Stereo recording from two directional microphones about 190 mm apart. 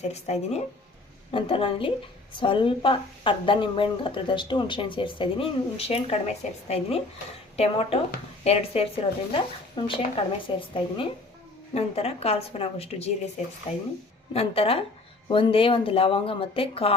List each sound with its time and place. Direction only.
0.1 s a woman's voice: 35° left (ahead or behind)